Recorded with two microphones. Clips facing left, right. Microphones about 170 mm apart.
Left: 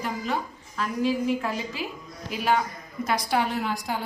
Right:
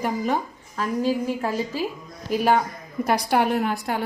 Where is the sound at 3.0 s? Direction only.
55° right (ahead or behind).